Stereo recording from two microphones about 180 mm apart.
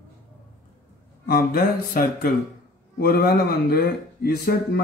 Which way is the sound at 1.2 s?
55° left (ahead or behind).